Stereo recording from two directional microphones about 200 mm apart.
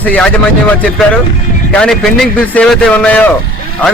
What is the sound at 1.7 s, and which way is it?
A man's voice, 5° left (ahead or behind).